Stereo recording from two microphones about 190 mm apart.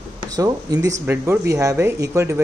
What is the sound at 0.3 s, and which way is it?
Speech, 20° right (ahead or behind).